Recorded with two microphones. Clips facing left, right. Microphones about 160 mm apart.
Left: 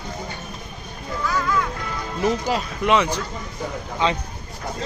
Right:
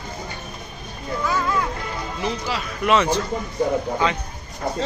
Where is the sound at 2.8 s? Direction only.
15° left (ahead or behind).